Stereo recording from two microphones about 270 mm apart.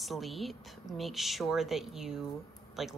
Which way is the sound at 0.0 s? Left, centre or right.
Centre.